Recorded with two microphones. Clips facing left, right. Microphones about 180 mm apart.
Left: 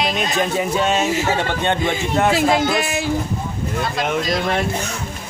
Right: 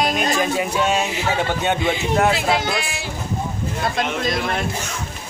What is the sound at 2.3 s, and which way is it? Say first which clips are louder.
Speech: left 4 dB; 40° left (ahead or behind).